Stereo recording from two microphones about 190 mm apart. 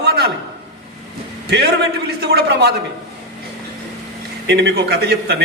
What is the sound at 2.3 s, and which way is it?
Speech, 60° right (ahead or behind).